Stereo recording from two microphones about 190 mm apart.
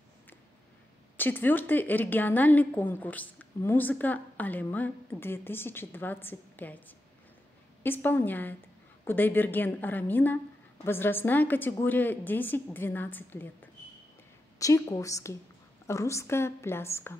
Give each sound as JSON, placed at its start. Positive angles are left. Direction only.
{"t": 1.1, "sound": "a woman's voice", "side_deg": 10}